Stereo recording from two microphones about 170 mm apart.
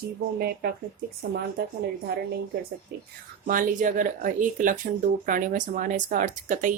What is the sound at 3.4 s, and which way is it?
Speech, 50° right (ahead or behind).